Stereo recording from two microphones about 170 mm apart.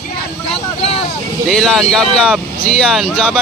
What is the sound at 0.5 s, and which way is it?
Vehicle, 35° left (ahead or behind).